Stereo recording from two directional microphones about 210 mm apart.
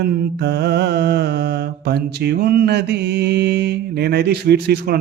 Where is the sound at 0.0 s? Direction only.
50° right (ahead or behind).